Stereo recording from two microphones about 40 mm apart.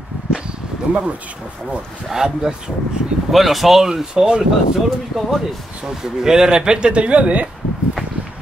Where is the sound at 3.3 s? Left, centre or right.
Centre.